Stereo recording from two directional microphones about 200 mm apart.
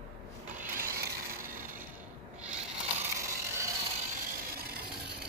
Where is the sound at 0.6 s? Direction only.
45° right (ahead or behind).